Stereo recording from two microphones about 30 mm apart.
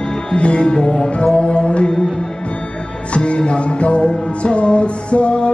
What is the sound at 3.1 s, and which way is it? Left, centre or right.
Music, left.